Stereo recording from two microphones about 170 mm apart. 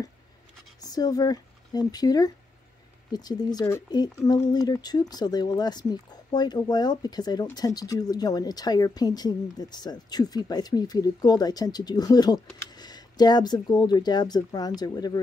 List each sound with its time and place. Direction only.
0.7 s speech: 20° left (ahead or behind)